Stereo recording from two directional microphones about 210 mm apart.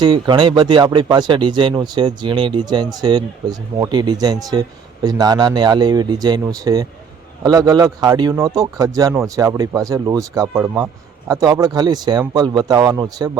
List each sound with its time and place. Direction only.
0.0 s speech: 20° right (ahead or behind)